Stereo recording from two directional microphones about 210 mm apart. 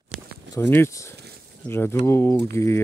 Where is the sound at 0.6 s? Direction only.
10° left (ahead or behind).